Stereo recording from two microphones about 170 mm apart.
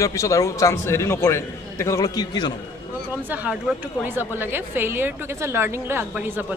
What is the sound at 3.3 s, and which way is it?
A woman's voice, 10° right (ahead or behind).